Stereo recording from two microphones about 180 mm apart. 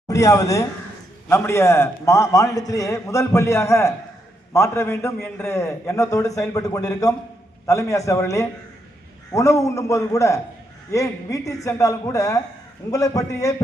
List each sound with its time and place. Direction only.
0.1 s a man's voice: 20° left (ahead or behind)